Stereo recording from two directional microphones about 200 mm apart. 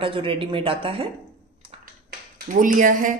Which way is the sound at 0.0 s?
25° right (ahead or behind).